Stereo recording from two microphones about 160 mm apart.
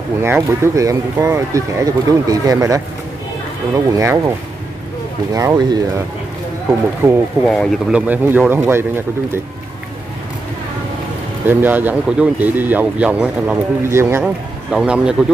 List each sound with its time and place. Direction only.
0.2 s speech: 15° right (ahead or behind)
5.3 s speech: 20° right (ahead or behind)
7.0 s speech: 15° right (ahead or behind)
7.4 s speech: centre (ahead or behind)
8.1 s speech: 10° right (ahead or behind)
11.4 s speech: 10° right (ahead or behind)
14.2 s speech: 5° right (ahead or behind)